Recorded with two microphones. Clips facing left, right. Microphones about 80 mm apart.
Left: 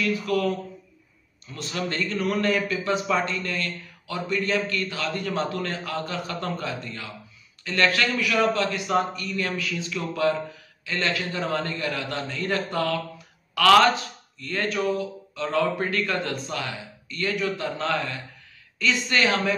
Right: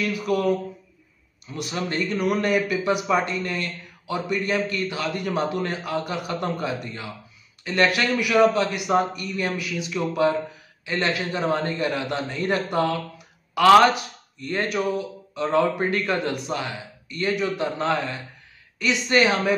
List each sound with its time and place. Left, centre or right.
0.0 s speech: centre